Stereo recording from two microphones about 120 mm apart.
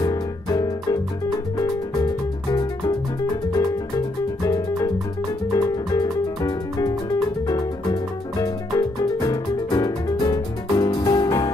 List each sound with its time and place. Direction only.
0.0 s music: 30° left (ahead or behind)
4.4 s music: 30° left (ahead or behind)